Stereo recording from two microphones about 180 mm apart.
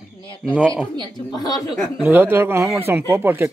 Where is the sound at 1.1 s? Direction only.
20° left (ahead or behind).